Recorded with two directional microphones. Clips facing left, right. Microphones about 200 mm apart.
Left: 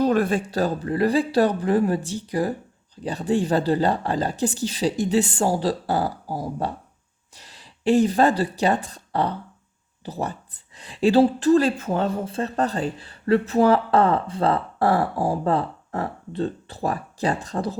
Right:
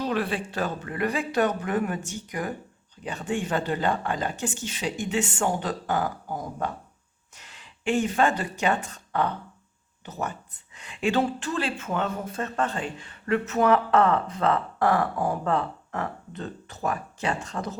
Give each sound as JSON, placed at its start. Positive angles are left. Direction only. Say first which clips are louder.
{"t": 0.0, "sound": "speech", "louder": "left 7 dB", "side_deg": 45}